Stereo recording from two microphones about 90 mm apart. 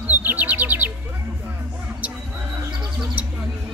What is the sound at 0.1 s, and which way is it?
Bird, 20° right (ahead or behind).